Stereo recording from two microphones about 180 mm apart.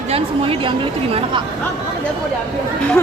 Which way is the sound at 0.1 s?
30° right (ahead or behind).